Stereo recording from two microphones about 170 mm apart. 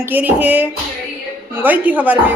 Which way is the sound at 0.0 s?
10° right (ahead or behind).